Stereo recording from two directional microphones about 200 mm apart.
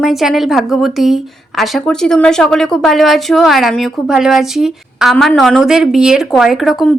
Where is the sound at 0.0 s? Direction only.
Centre (ahead or behind).